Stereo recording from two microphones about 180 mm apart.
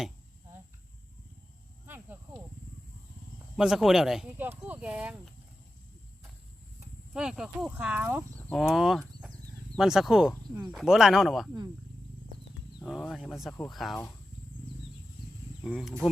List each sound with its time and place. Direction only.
1.9 s a sound: 10° right (ahead or behind)
3.6 s speech: centre (ahead or behind)
7.1 s speech: 5° right (ahead or behind)
8.4 s speech: 5° left (ahead or behind)
12.8 s speech: centre (ahead or behind)
15.6 s speech: centre (ahead or behind)